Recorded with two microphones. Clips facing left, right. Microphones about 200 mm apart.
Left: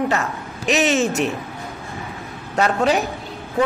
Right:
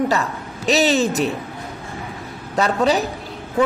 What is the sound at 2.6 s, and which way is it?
Speech, 35° right (ahead or behind).